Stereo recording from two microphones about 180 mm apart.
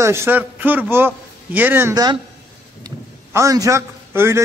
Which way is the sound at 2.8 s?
15° right (ahead or behind).